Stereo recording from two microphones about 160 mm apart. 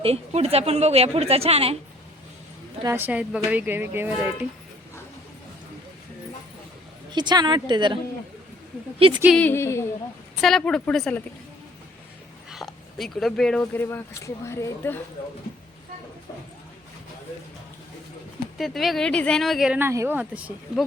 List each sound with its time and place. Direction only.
0.0 s a woman's voice: 40° right (ahead or behind)
2.8 s speech: 15° right (ahead or behind)
7.1 s a woman's voice: 25° right (ahead or behind)
9.0 s a woman's voice: 35° right (ahead or behind)
9.3 s a woman's voice: 10° left (ahead or behind)
10.4 s speech: 5° left (ahead or behind)
12.5 s speech: centre (ahead or behind); by 14.9 s 15° left (ahead or behind)
18.5 s speech: centre (ahead or behind)
19.8 s speech: 15° right (ahead or behind)